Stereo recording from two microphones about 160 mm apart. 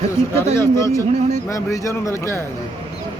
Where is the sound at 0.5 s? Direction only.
15° left (ahead or behind).